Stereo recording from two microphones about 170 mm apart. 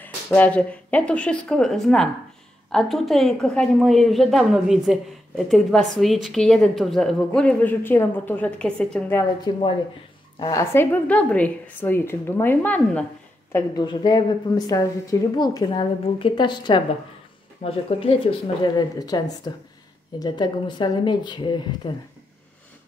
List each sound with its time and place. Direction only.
0.0 s a woman's voice: 10° left (ahead or behind)
9.4 s a woman's voice: 25° left (ahead or behind)
13.8 s a woman's voice: 25° left (ahead or behind)